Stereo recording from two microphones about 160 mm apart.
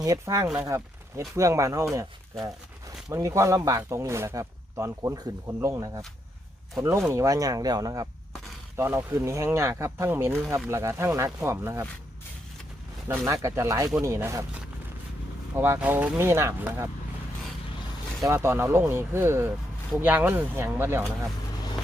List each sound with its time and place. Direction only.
0.0 s speech: 20° right (ahead or behind)
3.1 s speech: 20° right (ahead or behind)
13.1 s speech: 20° right (ahead or behind)
18.2 s speech: 15° right (ahead or behind)